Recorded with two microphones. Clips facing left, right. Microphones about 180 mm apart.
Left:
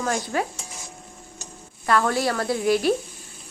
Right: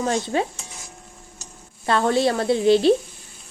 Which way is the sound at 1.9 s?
25° right (ahead or behind).